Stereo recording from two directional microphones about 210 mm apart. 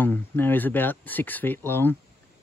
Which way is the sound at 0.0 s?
10° left (ahead or behind).